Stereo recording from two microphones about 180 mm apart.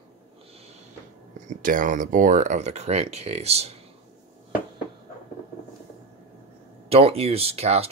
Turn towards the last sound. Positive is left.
turn(degrees=-35)  # may be behind; listen again after turning